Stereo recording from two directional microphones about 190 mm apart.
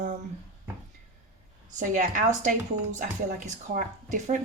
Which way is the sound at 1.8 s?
40° right (ahead or behind).